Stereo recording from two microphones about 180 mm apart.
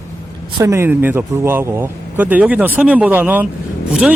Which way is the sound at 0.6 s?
15° right (ahead or behind).